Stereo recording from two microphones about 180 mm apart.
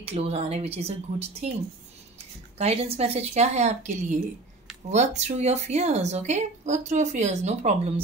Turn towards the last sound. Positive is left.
turn(degrees=-35)  # may be behind; listen again after turning